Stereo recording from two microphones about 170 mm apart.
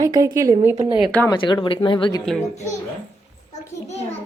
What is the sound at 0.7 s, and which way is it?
Speech, 30° right (ahead or behind).